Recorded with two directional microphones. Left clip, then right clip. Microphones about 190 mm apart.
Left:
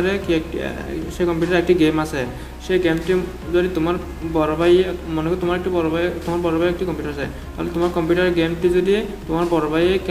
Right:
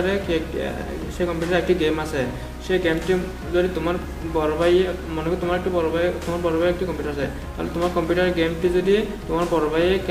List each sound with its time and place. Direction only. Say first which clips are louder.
0.0 s speech: left 2 dB; 30° left (ahead or behind)
8.1 s speech: left 2 dB; 25° left (ahead or behind)